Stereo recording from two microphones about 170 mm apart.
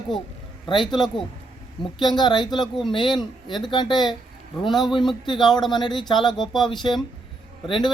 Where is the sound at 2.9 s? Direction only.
30° left (ahead or behind).